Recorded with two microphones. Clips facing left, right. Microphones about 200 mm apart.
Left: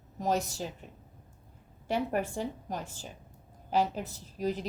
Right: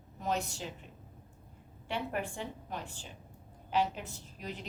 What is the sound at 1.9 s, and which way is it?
A woman's voice, 40° left (ahead or behind).